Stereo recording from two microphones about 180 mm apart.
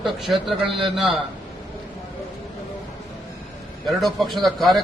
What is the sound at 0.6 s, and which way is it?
Speech, 30° right (ahead or behind).